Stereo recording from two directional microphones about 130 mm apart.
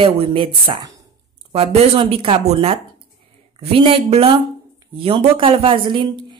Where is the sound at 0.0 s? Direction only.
45° right (ahead or behind).